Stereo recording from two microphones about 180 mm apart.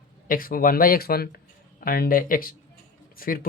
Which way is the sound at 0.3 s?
55° left (ahead or behind).